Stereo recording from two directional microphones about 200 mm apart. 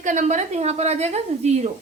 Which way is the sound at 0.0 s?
40° right (ahead or behind).